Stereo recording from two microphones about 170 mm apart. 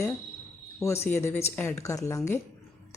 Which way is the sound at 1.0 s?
15° left (ahead or behind).